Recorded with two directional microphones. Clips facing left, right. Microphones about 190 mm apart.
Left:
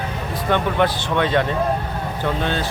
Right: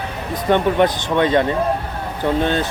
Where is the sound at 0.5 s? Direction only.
20° right (ahead or behind).